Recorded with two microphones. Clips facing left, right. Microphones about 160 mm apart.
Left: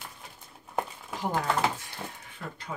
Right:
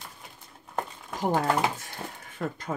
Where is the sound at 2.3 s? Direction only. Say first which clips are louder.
Right 12 dB; 45° right (ahead or behind).